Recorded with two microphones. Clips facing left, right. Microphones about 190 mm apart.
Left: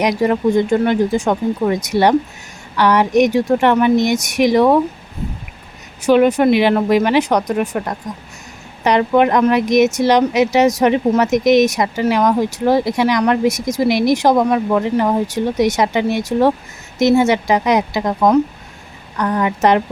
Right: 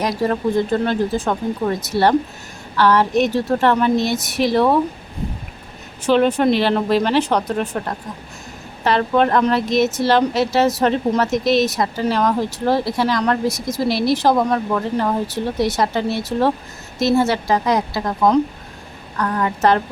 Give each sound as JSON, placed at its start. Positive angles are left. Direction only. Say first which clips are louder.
{"t": 0.0, "sound": "speech", "louder": "left 4 dB", "side_deg": 15}
{"t": 6.1, "sound": "speech", "louder": "left 3 dB", "side_deg": 10}